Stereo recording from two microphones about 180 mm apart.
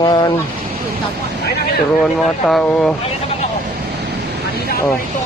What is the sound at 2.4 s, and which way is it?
Speech, 5° left (ahead or behind).